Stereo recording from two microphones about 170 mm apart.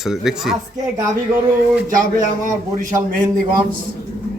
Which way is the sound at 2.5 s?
50° right (ahead or behind).